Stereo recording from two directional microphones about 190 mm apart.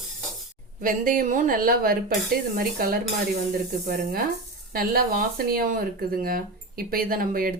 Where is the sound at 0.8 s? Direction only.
45° right (ahead or behind).